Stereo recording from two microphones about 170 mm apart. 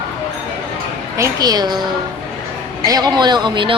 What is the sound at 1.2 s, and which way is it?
Speech, 25° right (ahead or behind).